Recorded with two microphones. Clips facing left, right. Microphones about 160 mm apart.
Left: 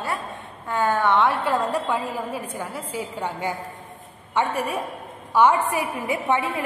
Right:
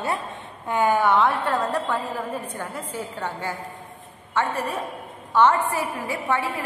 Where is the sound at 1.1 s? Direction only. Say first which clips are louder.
Even; centre (ahead or behind).